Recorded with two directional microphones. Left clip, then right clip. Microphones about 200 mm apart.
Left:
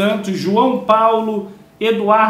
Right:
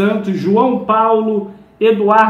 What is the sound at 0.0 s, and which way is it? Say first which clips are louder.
A man's voice: right 1 dB; 5° left (ahead or behind).